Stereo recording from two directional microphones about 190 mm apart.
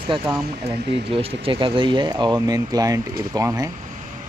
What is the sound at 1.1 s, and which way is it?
Speech, 30° right (ahead or behind).